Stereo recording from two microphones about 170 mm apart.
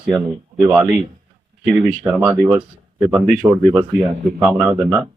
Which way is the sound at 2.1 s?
Centre (ahead or behind).